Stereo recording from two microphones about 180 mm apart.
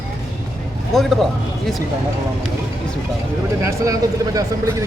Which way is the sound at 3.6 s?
20° right (ahead or behind).